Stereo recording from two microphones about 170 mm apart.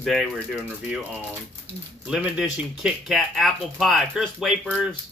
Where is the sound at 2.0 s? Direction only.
5° right (ahead or behind).